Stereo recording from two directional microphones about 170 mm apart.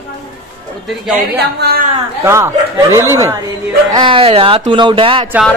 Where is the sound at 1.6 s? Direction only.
65° right (ahead or behind).